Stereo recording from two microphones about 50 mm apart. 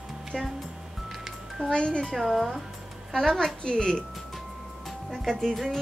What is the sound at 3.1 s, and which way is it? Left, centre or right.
Speech, centre.